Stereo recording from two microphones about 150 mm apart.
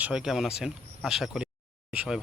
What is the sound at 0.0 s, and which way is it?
Speech, 5° right (ahead or behind).